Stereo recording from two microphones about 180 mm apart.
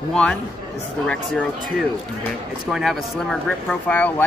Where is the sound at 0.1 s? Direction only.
5° left (ahead or behind).